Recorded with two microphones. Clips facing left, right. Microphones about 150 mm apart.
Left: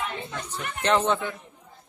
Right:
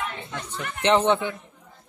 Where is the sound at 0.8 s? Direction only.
20° right (ahead or behind).